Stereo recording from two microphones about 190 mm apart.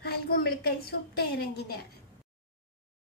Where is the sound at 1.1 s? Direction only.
55° left (ahead or behind).